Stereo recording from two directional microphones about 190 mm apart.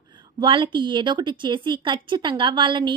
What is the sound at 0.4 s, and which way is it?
A woman's voice, 25° right (ahead or behind).